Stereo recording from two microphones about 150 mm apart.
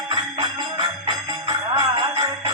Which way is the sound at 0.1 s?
30° right (ahead or behind).